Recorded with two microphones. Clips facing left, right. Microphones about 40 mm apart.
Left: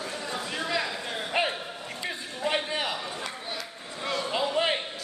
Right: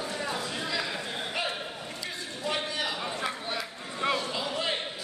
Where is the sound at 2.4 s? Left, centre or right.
Left.